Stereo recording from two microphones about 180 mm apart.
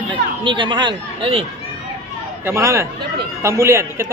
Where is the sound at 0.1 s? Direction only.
25° right (ahead or behind).